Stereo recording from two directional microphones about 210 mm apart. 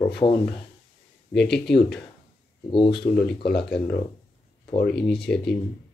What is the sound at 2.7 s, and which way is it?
Speech, 25° left (ahead or behind).